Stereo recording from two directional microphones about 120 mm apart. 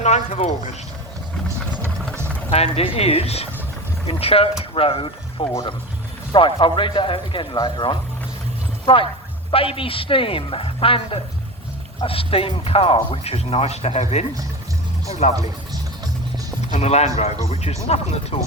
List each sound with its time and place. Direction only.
0.0 s speech: 70° left (ahead or behind)
2.5 s speech: 55° left (ahead or behind); by 7.9 s 40° left (ahead or behind)
9.5 s speech: 50° left (ahead or behind)
16.7 s speech: 65° left (ahead or behind)